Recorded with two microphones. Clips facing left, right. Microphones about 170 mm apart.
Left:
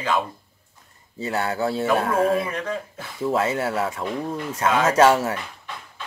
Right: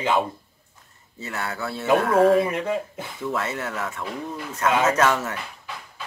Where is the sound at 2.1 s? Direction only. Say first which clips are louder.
Right 4 dB; 30° right (ahead or behind).